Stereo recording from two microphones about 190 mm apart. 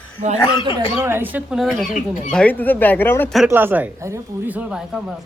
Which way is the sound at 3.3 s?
5° right (ahead or behind).